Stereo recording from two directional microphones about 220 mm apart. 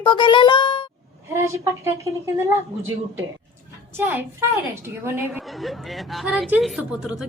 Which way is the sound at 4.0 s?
10° right (ahead or behind).